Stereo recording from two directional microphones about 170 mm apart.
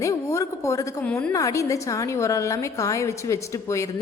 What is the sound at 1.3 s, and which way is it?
A woman's voice, 20° left (ahead or behind).